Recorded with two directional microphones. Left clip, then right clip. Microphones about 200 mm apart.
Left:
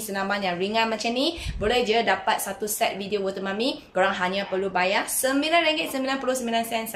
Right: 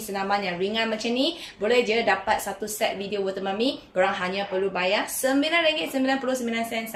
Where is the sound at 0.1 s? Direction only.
20° left (ahead or behind).